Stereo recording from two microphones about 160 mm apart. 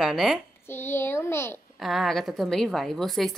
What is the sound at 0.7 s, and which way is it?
Speech, 15° left (ahead or behind).